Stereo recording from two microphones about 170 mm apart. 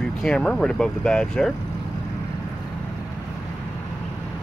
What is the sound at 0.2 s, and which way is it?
Speech, 5° left (ahead or behind).